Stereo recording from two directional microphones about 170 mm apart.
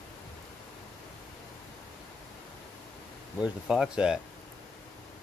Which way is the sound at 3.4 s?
5° right (ahead or behind).